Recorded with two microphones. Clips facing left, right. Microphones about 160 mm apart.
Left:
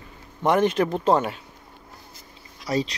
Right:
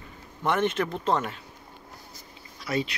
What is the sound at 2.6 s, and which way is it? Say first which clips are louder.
Speech: left 4 dB; 35° left (ahead or behind).